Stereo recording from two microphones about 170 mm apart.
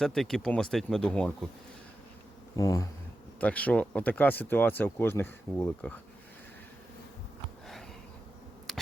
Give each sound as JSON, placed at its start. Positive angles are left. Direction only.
{"t": 0.0, "sound": "speech", "side_deg": 0}
{"t": 2.6, "sound": "speech", "side_deg": 20}
{"t": 3.4, "sound": "speech", "side_deg": 10}
{"t": 8.7, "sound": "a sound", "side_deg": 0}